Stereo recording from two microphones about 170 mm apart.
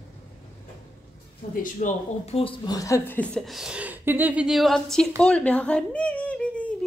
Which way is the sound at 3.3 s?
Centre (ahead or behind).